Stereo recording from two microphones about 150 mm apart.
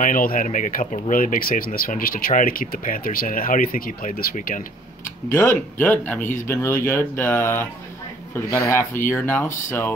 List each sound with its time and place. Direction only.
0.0 s speech: 65° left (ahead or behind)
5.3 s speech: 15° left (ahead or behind)